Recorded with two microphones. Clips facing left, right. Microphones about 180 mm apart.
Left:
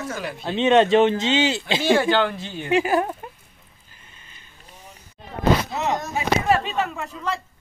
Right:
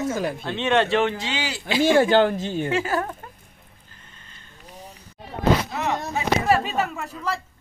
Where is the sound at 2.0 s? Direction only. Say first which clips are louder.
Right 3 dB; 40° right (ahead or behind).